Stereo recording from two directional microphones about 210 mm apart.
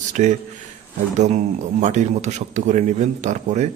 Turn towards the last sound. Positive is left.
turn(degrees=-35)  # may be behind; listen again after turning